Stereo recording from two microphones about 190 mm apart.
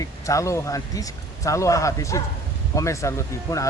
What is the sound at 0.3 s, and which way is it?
Speech, 15° left (ahead or behind).